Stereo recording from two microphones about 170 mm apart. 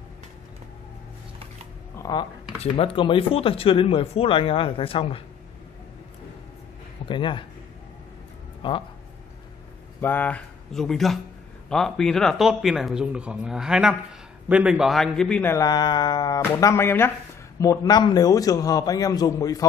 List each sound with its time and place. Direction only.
2.0 s a sound: 20° left (ahead or behind)
2.6 s speech: 35° left (ahead or behind)
7.1 s a man's voice: 30° left (ahead or behind)
8.6 s a man's voice: 30° left (ahead or behind)
9.9 s speech: 10° left (ahead or behind)
15.5 s a man's voice: 25° left (ahead or behind)